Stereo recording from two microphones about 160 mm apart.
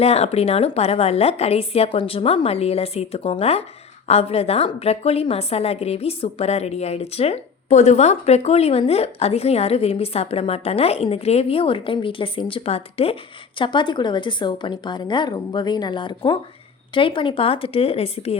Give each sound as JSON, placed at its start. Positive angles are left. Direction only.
{"t": 0.0, "sound": "a woman's voice", "side_deg": 40}